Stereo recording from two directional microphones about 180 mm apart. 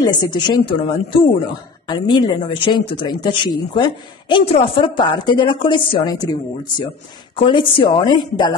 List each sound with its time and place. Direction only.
0.0 s speech: 25° left (ahead or behind)
7.3 s speech: 30° left (ahead or behind)